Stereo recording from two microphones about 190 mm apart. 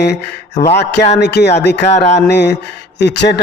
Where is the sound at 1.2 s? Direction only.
60° left (ahead or behind).